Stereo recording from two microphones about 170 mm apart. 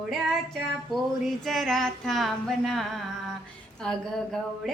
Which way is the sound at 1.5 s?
Centre (ahead or behind).